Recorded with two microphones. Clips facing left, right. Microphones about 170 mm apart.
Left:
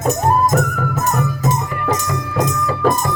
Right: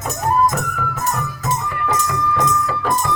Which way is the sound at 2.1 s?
50° left (ahead or behind).